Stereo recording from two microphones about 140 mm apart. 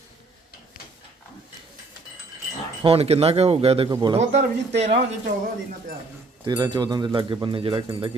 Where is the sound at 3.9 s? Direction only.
30° right (ahead or behind).